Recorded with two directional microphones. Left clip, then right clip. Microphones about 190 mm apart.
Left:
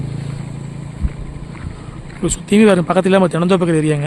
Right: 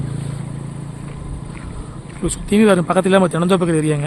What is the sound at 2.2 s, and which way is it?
Speech, 15° left (ahead or behind).